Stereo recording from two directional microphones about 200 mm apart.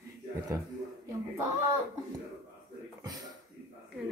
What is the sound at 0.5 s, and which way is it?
Speech, 15° right (ahead or behind).